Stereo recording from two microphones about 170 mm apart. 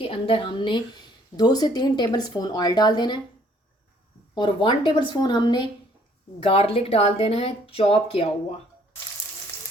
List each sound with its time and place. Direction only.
0.0 s a woman's voice: 35° left (ahead or behind)
4.4 s a woman's voice: 30° left (ahead or behind)